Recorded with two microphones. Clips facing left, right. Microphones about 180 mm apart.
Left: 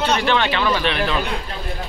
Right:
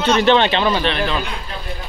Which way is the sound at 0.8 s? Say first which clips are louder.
Right 1 dB; 5° left (ahead or behind).